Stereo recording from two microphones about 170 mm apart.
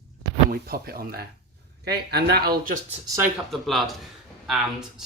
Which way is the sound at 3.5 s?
Centre (ahead or behind).